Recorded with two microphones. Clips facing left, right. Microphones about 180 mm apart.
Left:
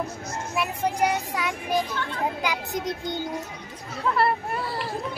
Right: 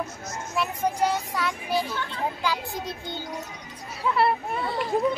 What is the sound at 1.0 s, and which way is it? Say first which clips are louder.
Speech: left 1 dB; 15° left (ahead or behind).